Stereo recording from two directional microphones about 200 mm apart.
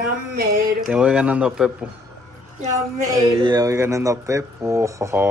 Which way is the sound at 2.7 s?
15° right (ahead or behind).